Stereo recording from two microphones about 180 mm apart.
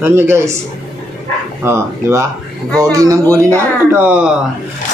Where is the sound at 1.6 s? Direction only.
15° right (ahead or behind).